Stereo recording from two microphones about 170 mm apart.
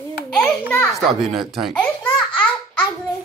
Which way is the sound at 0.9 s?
Centre (ahead or behind).